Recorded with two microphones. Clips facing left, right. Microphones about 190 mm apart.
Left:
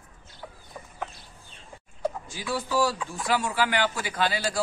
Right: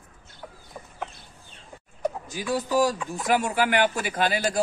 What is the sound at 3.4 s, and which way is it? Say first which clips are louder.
Speech: right 3 dB; 50° right (ahead or behind).